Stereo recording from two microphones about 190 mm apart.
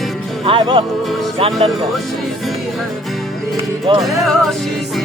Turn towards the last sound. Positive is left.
turn(degrees=0)  # may be behind; listen again after turning